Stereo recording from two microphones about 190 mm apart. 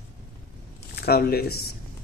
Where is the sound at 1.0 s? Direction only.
55° left (ahead or behind).